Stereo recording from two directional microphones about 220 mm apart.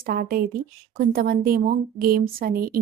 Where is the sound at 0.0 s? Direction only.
40° right (ahead or behind).